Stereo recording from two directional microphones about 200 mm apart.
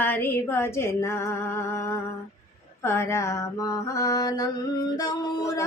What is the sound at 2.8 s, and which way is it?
Mantra, 15° left (ahead or behind).